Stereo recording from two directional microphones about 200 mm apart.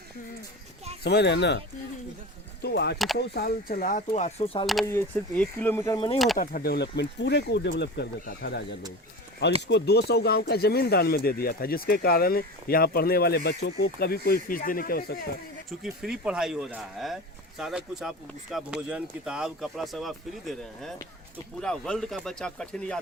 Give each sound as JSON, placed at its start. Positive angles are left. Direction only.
{"t": 1.0, "sound": "speech", "side_deg": 55}
{"t": 4.6, "sound": "speech", "side_deg": 0}
{"t": 6.3, "sound": "speech", "side_deg": 45}
{"t": 15.8, "sound": "speech", "side_deg": -5}